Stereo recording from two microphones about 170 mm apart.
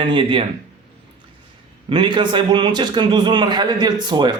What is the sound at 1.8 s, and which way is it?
A man's voice, 25° right (ahead or behind).